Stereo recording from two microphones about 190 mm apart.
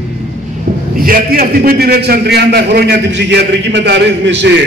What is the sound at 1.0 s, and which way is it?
A man's voice, 50° right (ahead or behind).